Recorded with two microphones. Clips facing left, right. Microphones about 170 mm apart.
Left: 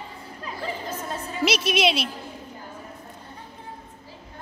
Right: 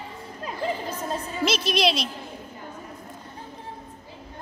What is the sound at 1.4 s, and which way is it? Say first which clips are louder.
Speech: left 1 dB; 5° left (ahead or behind).